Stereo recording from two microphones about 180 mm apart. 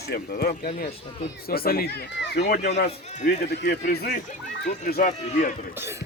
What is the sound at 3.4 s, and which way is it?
Speech, 65° left (ahead or behind).